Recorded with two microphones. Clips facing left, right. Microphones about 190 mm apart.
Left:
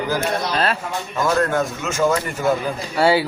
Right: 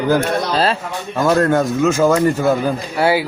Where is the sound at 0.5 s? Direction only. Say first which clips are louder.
Right 4 dB; 30° right (ahead or behind).